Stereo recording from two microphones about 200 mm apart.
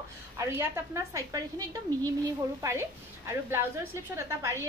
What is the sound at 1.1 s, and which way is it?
Speech, 15° right (ahead or behind).